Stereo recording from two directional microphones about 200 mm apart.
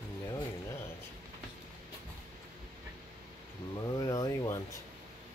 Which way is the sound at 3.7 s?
15° left (ahead or behind).